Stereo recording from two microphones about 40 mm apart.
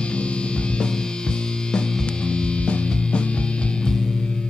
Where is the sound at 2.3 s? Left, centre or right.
Left.